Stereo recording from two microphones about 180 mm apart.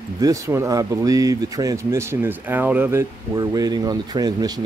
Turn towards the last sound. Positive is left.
turn(degrees=-20)  # may be behind; listen again after turning